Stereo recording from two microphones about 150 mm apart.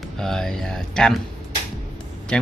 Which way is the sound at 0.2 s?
5° left (ahead or behind).